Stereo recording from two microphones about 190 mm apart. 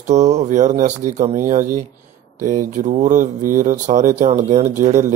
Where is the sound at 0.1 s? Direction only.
35° right (ahead or behind).